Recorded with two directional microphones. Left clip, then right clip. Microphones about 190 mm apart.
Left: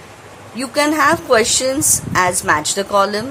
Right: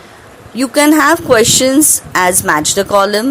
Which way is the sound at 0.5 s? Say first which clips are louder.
Right 6 dB; 30° right (ahead or behind).